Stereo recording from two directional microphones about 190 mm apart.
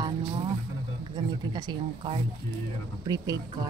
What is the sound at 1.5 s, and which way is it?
Speech, 25° right (ahead or behind).